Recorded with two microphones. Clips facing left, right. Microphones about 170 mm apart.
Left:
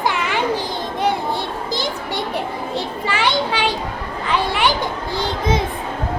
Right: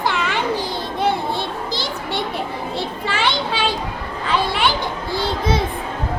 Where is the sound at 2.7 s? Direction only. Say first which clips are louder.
Left 1 dB; 15° left (ahead or behind).